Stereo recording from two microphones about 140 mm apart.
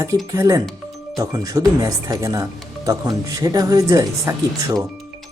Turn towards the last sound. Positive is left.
turn(degrees=-25)  # may be behind; listen again after turning